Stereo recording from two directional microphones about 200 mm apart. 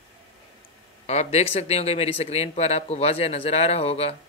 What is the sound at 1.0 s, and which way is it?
Speech, 35° left (ahead or behind).